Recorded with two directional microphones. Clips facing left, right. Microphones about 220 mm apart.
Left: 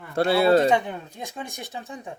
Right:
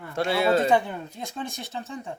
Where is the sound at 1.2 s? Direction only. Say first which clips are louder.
Right 1 dB; 15° left (ahead or behind).